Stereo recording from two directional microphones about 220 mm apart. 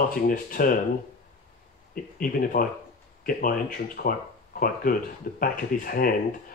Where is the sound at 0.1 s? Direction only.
40° left (ahead or behind).